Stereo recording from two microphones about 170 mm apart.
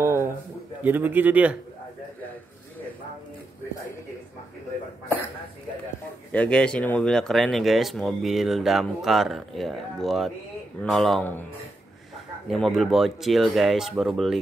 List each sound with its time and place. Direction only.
0.0 s a sound: 15° right (ahead or behind)
0.8 s a man's voice: 10° right (ahead or behind)
6.3 s speech: 5° left (ahead or behind)
12.4 s speech: centre (ahead or behind)